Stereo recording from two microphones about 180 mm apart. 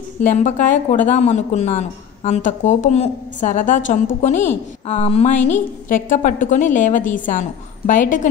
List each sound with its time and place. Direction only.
0.3 s speech: 45° left (ahead or behind)